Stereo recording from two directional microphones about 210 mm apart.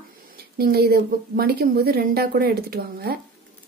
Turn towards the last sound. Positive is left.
turn(degrees=-45)  # may be behind; listen again after turning